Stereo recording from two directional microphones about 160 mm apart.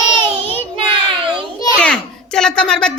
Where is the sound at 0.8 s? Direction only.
35° right (ahead or behind).